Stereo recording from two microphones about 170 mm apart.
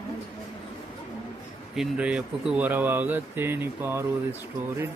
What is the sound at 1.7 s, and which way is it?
Speech, 5° right (ahead or behind).